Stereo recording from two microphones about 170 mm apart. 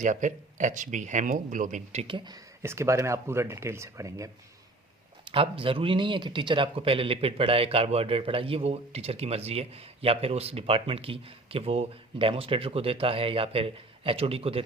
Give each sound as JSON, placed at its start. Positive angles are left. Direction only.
{"t": 0.0, "sound": "speech", "side_deg": -45}
{"t": 5.2, "sound": "speech", "side_deg": -30}